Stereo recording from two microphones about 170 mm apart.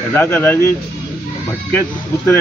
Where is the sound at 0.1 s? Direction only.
10° left (ahead or behind).